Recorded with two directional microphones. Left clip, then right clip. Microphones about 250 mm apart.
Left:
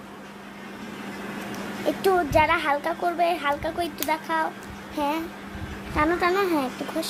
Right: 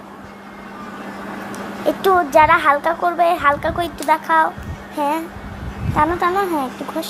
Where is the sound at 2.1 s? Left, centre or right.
Centre.